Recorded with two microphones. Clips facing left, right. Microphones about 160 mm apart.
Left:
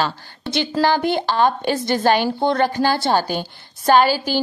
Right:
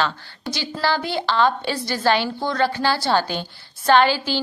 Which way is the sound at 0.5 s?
55° left (ahead or behind).